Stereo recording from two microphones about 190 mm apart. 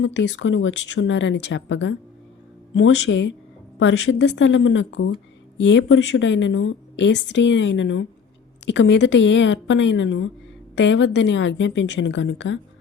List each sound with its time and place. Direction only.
0.0 s a woman's voice: 75° left (ahead or behind)
5.5 s a woman's voice: 70° left (ahead or behind)